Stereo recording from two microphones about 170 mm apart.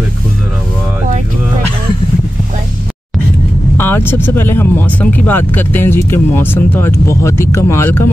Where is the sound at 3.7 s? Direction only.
10° left (ahead or behind).